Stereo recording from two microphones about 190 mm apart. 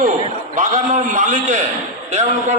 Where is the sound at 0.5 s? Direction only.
40° right (ahead or behind).